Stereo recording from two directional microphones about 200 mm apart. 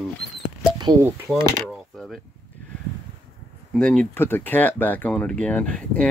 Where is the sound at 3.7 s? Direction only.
5° left (ahead or behind).